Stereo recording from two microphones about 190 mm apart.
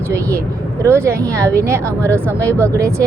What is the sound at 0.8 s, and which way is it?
Speech, 15° right (ahead or behind).